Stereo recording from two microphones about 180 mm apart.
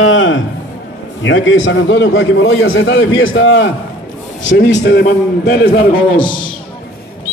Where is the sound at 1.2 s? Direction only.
90° left.